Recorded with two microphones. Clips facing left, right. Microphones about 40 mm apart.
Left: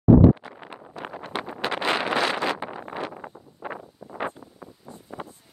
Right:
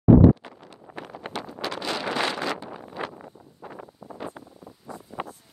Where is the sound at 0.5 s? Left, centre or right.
Left.